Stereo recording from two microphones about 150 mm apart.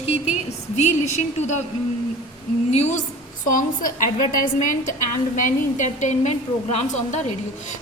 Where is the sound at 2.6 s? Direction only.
45° left (ahead or behind).